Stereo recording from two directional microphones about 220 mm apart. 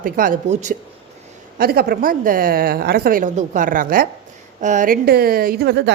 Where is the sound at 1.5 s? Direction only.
45° right (ahead or behind).